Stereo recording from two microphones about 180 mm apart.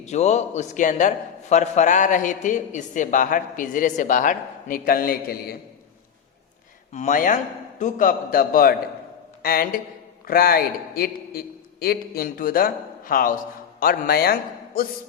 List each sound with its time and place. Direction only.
0.0 s a man's voice: 40° left (ahead or behind); by 5.5 s 55° left (ahead or behind)
6.9 s a man's voice: 45° left (ahead or behind)